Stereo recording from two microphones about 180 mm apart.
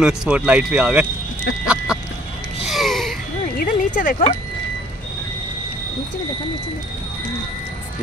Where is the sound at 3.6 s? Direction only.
50° left (ahead or behind).